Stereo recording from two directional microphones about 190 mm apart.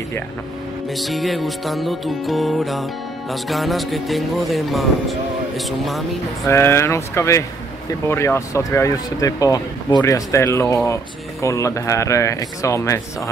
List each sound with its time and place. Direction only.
0.9 s music: centre (ahead or behind)
6.4 s speech: 15° left (ahead or behind)